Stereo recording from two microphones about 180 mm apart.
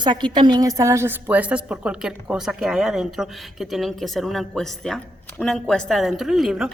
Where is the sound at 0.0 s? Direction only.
25° right (ahead or behind).